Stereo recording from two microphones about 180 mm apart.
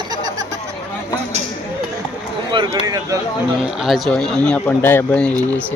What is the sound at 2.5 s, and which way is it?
Speech, 25° right (ahead or behind).